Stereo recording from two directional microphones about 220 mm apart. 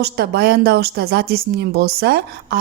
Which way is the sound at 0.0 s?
45° right (ahead or behind).